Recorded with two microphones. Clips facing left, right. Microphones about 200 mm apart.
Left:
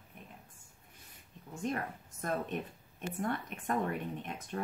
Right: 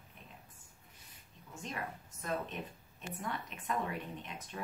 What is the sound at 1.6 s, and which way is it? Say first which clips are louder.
Speech: left 7 dB; 50° left (ahead or behind).